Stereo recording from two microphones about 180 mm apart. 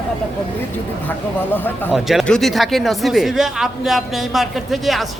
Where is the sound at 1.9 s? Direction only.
Centre (ahead or behind).